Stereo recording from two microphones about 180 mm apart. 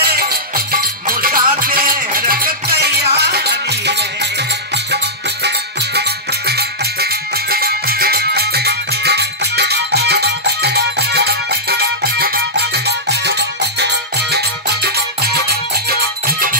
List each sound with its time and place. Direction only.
0.0 s music: 60° right (ahead or behind)
5.9 s music: 65° right (ahead or behind)